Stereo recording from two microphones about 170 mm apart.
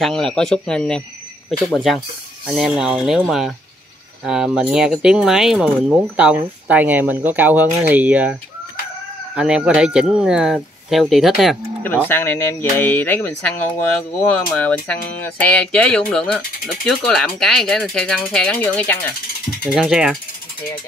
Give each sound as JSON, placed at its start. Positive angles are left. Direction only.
{"t": 0.0, "sound": "speech", "side_deg": 5}
{"t": 12.1, "sound": "speech", "side_deg": 15}
{"t": 19.6, "sound": "speech", "side_deg": -5}